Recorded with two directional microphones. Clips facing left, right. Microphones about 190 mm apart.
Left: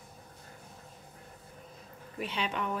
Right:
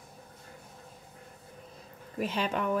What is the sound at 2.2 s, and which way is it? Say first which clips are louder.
Speech: right 4 dB; 45° right (ahead or behind).